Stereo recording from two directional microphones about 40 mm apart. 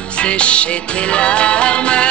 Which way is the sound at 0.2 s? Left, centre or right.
Left.